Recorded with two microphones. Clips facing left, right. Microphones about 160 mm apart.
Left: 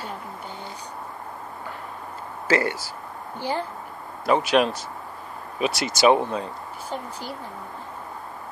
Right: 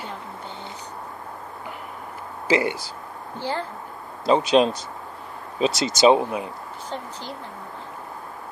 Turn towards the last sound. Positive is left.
turn(degrees=10)  # may be behind; listen again after turning